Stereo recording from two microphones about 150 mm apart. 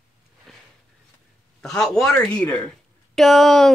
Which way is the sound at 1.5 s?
5° left (ahead or behind).